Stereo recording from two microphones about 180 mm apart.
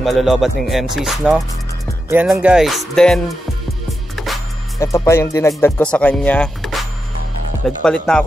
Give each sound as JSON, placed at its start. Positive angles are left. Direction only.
{"t": 0.0, "sound": "speech", "side_deg": 0}
{"t": 4.3, "sound": "music", "side_deg": 0}
{"t": 4.7, "sound": "speech", "side_deg": 15}